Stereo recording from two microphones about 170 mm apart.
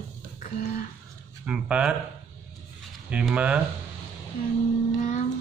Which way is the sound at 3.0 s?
5° right (ahead or behind).